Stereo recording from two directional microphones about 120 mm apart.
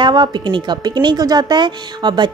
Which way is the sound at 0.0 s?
40° right (ahead or behind).